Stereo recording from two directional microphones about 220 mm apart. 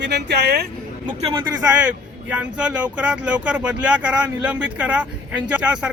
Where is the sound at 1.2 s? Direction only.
20° right (ahead or behind).